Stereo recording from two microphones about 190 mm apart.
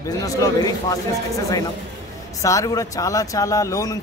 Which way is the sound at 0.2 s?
20° left (ahead or behind).